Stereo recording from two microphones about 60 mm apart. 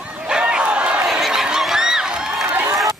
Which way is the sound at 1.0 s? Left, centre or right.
Centre.